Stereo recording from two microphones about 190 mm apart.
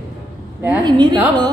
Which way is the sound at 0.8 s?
25° right (ahead or behind).